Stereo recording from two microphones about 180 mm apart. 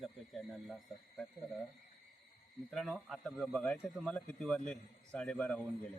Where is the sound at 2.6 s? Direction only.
5° left (ahead or behind).